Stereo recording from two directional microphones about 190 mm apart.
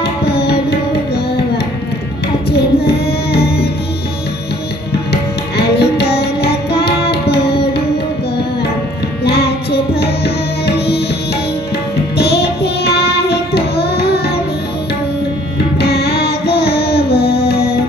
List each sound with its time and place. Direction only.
0.0 s music: 60° left (ahead or behind)
2.5 s child singing: 55° left (ahead or behind)
5.1 s music: 60° left (ahead or behind)
9.2 s tabla: 55° left (ahead or behind)
12.2 s child singing: 60° left (ahead or behind)
15.8 s music: 55° left (ahead or behind)